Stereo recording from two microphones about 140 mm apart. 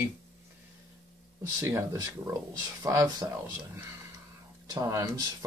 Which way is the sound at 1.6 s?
20° right (ahead or behind).